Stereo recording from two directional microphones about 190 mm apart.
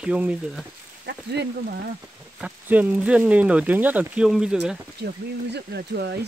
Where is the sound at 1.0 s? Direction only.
60° right (ahead or behind).